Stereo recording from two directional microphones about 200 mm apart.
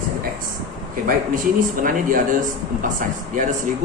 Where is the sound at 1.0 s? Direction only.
45° right (ahead or behind).